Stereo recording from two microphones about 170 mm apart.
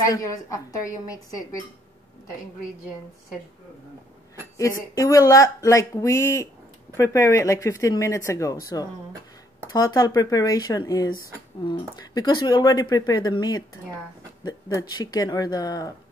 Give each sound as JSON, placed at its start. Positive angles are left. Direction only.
{"t": 0.0, "sound": "speech", "side_deg": 20}
{"t": 4.6, "sound": "speech", "side_deg": 20}